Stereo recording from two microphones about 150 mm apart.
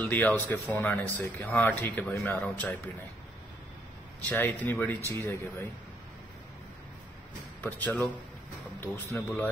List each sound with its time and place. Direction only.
0.0 s speech: 10° left (ahead or behind)
4.3 s speech: 10° left (ahead or behind)
7.6 s speech: 10° left (ahead or behind)